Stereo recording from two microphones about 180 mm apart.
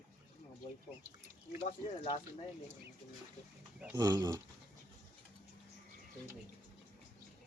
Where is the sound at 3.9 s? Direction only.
20° right (ahead or behind).